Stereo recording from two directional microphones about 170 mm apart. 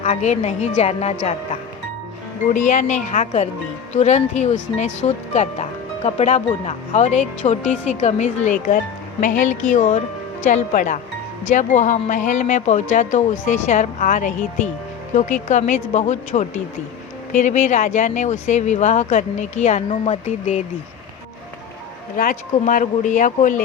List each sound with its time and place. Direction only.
0.0 s speech: 40° left (ahead or behind)
2.5 s speech: 50° left (ahead or behind)
22.2 s speech: 55° left (ahead or behind)